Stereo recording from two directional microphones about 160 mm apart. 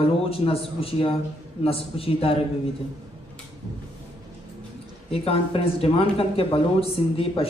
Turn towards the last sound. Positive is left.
turn(degrees=35)  # may be behind; listen again after turning